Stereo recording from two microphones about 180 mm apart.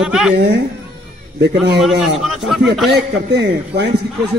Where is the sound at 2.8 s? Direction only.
70° right (ahead or behind).